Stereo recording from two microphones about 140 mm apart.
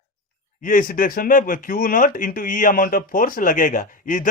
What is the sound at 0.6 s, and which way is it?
Speech, 75° left (ahead or behind).